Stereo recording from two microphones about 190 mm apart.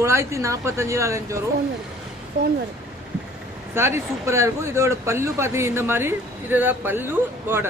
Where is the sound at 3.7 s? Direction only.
15° right (ahead or behind).